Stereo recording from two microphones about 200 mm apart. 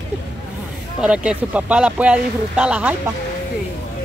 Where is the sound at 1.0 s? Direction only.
5° right (ahead or behind).